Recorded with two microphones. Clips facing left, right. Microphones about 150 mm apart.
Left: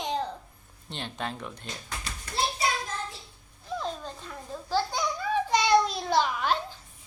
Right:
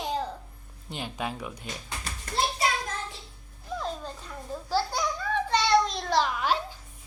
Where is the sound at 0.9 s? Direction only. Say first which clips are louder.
Right 1 dB; 10° right (ahead or behind).